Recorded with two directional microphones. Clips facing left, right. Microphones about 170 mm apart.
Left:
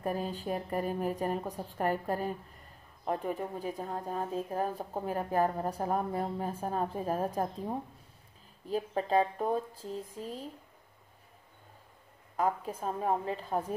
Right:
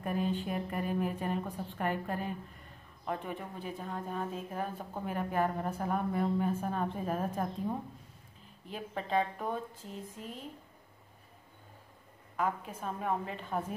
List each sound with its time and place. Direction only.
0.0 s speech: 35° left (ahead or behind)
8.6 s speech: 35° left (ahead or behind)
12.4 s speech: 35° left (ahead or behind)